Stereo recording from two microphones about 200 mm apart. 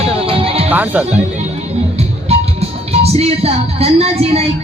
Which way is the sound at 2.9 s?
30° right (ahead or behind).